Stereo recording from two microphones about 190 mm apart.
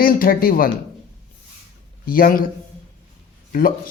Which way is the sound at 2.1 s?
50° left (ahead or behind).